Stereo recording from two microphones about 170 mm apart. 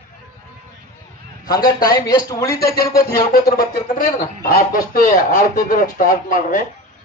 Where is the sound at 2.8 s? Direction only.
65° left (ahead or behind).